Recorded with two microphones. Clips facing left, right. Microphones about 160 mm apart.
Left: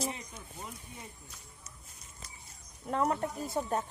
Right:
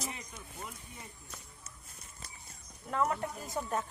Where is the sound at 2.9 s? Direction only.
30° left (ahead or behind).